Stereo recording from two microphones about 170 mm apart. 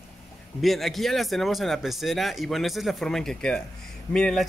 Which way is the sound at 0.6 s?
Centre (ahead or behind).